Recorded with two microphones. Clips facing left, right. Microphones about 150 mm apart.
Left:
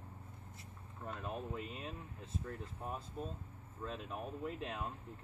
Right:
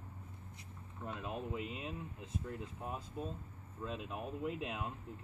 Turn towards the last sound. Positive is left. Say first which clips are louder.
# right 2 dB
turn(degrees=-5)  # may be behind; listen again after turning